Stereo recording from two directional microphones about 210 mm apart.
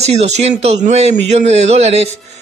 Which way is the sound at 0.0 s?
30° right (ahead or behind).